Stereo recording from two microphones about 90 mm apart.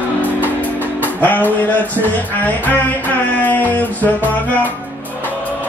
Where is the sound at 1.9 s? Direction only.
20° left (ahead or behind).